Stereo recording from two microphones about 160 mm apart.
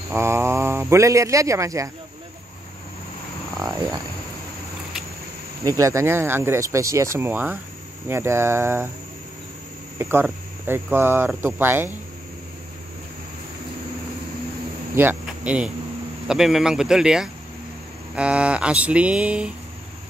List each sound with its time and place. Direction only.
0.1 s speech: 15° right (ahead or behind)
3.6 s frog: 25° right (ahead or behind)
5.6 s speech: 20° right (ahead or behind)
9.9 s speech: 15° right (ahead or behind)
15.0 s speech: 10° right (ahead or behind)